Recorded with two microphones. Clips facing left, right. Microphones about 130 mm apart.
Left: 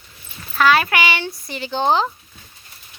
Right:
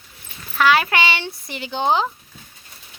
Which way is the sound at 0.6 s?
15° right (ahead or behind).